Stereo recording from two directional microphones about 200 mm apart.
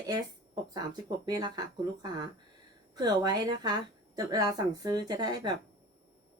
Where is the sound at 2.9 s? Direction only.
20° right (ahead or behind).